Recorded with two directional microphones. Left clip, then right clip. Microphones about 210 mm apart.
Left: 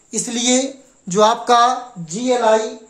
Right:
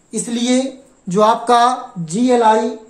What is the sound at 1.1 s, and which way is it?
Speech, 20° left (ahead or behind).